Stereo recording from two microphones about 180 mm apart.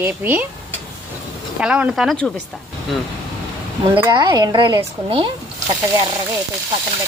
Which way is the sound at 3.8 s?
10° right (ahead or behind).